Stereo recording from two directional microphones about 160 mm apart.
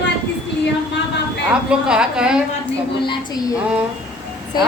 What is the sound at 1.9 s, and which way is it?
Speech, 5° right (ahead or behind).